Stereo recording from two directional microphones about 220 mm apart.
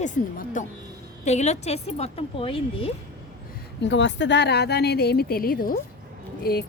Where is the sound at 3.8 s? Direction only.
55° left (ahead or behind).